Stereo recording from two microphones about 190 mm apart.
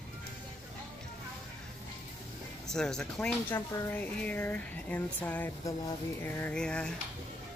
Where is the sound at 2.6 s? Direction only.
5° left (ahead or behind).